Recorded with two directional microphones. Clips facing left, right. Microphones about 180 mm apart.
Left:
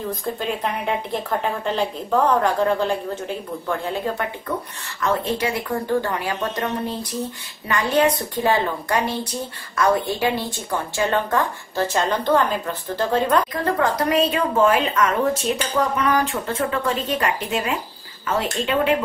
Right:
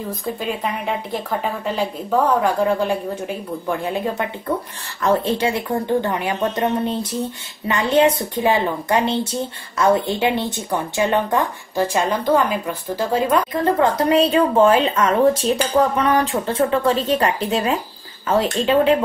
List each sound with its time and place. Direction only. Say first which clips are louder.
0.2 s a woman's voice: right 3 dB; centre (ahead or behind)
5.0 s a woman's voice: right 4 dB; 30° right (ahead or behind); by 13.4 s 10° right (ahead or behind)
13.5 s a woman's voice: right 4 dB; 25° right (ahead or behind)